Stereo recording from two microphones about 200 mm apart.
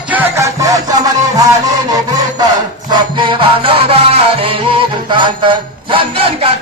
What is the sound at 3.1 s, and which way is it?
Music, 25° right (ahead or behind).